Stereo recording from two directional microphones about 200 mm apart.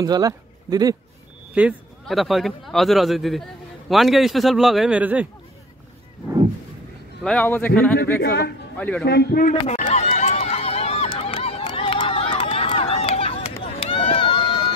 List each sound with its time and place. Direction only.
0.0 s speech: 20° right (ahead or behind)
1.5 s a man's voice: 5° right (ahead or behind)
7.2 s speech: 10° left (ahead or behind)
8.2 s a man's voice: 55° left (ahead or behind)
8.7 s a man's voice: 5° left (ahead or behind)
9.0 s speech: 55° left (ahead or behind)
9.5 s a sound: 35° left (ahead or behind)
10.0 s run: 30° left (ahead or behind)